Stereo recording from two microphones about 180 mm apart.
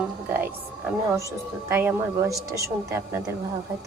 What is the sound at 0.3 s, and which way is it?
A woman's voice, 10° right (ahead or behind).